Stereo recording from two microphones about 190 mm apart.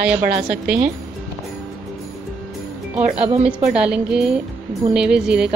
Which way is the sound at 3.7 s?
5° right (ahead or behind).